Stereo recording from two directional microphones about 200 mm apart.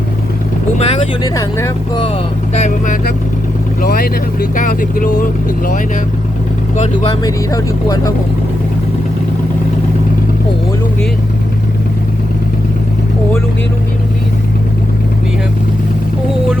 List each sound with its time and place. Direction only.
0.8 s speech: 30° left (ahead or behind)
1.4 s speech: 15° left (ahead or behind)
2.6 s speech: 40° left (ahead or behind)
7.2 s speech: 20° left (ahead or behind)